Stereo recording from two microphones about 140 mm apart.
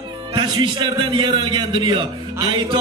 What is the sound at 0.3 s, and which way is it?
Speech, 30° right (ahead or behind).